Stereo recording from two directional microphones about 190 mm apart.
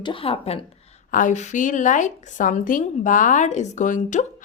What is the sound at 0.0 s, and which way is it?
A woman's voice, 30° left (ahead or behind).